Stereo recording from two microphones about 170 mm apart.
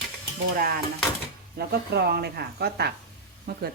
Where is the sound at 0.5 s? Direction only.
60° right (ahead or behind).